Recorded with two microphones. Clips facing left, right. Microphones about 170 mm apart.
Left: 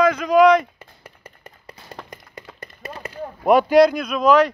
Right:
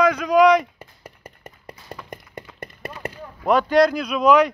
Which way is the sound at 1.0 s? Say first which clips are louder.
Right 2 dB; 40° right (ahead or behind).